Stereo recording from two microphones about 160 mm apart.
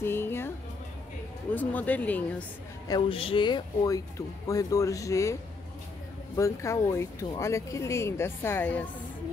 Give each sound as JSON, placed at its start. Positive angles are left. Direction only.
{"t": 0.0, "sound": "a sound", "side_deg": 15}
{"t": 1.5, "sound": "speech", "side_deg": 10}
{"t": 2.9, "sound": "speech", "side_deg": 35}